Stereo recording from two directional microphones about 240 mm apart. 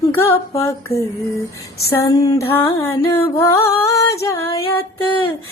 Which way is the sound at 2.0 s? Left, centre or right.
Centre.